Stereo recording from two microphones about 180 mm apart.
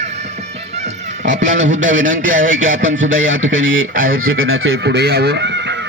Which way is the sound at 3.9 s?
50° right (ahead or behind).